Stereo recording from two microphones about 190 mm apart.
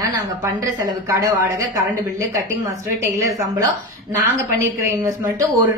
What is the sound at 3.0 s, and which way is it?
A woman's voice, 15° right (ahead or behind).